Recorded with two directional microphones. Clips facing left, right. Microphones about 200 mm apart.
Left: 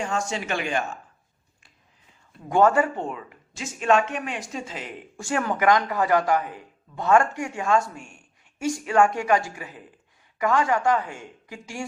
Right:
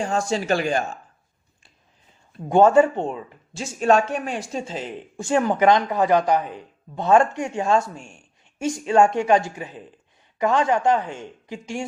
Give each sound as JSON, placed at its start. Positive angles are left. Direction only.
{"t": 0.0, "sound": "speech", "side_deg": -35}
{"t": 2.5, "sound": "a man's voice", "side_deg": -25}
{"t": 5.1, "sound": "a man's voice", "side_deg": -20}